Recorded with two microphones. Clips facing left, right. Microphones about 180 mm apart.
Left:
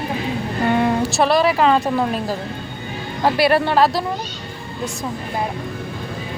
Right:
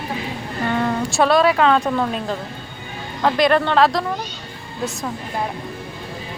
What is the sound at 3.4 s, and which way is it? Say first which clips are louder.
Speech: even; 10° left (ahead or behind).